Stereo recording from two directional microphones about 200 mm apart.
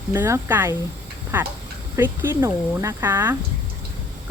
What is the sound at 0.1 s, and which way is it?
Speech, 15° right (ahead or behind).